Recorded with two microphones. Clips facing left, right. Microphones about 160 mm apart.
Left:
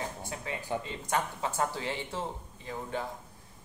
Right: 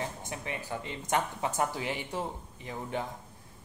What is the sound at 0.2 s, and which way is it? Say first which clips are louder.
A man's voice: even; 20° right (ahead or behind).